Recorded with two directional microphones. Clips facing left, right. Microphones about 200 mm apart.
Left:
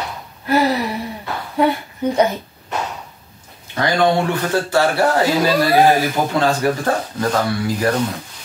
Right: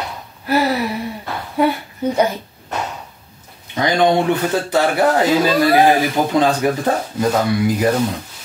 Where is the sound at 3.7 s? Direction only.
20° right (ahead or behind).